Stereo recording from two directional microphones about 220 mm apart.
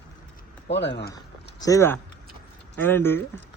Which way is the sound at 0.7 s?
50° left (ahead or behind).